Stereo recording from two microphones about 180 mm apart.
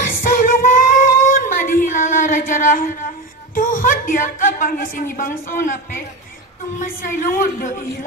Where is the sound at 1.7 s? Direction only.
45° left (ahead or behind).